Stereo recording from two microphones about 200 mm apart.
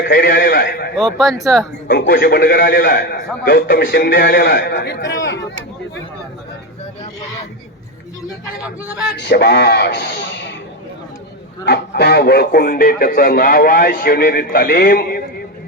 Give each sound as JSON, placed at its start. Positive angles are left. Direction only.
{"t": 0.1, "sound": "speech", "side_deg": 45}
{"t": 0.9, "sound": "speech", "side_deg": 0}
{"t": 1.9, "sound": "a man's voice", "side_deg": 45}
{"t": 9.1, "sound": "a man's voice", "side_deg": 55}
{"t": 11.6, "sound": "speech", "side_deg": 55}